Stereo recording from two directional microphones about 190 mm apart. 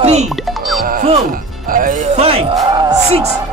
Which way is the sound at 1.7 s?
45° right (ahead or behind).